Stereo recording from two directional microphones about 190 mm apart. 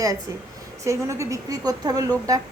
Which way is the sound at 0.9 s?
15° right (ahead or behind).